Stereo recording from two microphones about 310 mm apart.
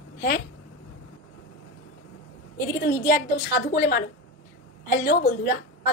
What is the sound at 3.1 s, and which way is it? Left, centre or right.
A woman's voice, left.